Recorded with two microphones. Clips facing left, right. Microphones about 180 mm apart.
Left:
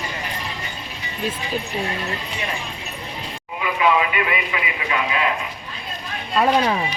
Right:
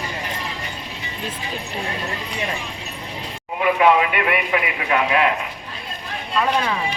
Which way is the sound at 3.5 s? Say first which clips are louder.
Right 4 dB; 55° right (ahead or behind).